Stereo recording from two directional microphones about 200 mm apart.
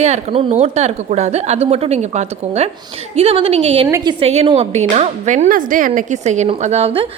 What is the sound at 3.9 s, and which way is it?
Speech, 15° right (ahead or behind).